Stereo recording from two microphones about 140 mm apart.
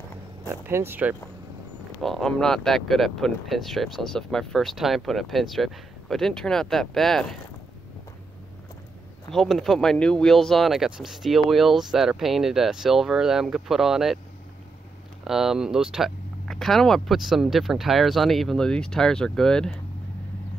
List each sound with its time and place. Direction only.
0.5 s speech: 20° right (ahead or behind)
2.0 s speech: centre (ahead or behind)
9.3 s speech: centre (ahead or behind)
15.2 s speech: 5° right (ahead or behind)